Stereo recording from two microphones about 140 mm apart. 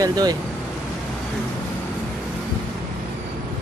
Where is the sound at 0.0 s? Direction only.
30° right (ahead or behind).